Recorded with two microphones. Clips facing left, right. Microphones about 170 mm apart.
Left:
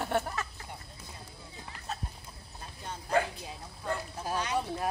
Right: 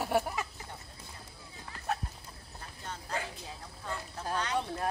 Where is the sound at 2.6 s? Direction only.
15° left (ahead or behind).